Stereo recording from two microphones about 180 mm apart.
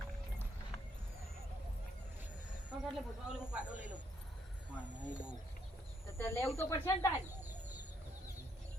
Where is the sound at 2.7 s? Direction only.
5° right (ahead or behind).